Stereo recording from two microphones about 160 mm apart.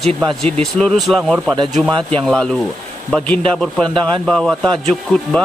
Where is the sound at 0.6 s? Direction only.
Centre (ahead or behind).